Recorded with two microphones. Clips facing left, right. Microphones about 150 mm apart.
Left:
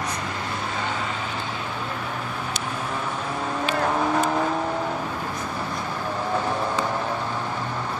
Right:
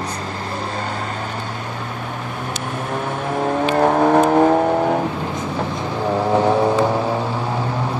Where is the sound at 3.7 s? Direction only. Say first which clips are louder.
Right 9 dB; 55° right (ahead or behind).